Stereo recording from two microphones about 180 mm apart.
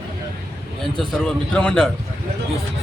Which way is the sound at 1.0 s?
5° left (ahead or behind).